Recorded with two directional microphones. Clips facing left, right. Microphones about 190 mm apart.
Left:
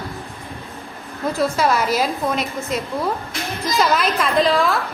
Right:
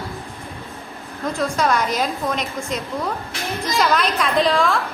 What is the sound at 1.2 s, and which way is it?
A woman's voice, 5° left (ahead or behind).